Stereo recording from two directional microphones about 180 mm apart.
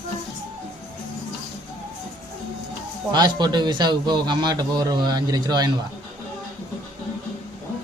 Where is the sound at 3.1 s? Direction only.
25° right (ahead or behind).